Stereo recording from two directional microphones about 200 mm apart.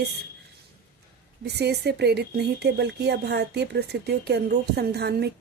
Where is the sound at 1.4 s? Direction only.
55° right (ahead or behind).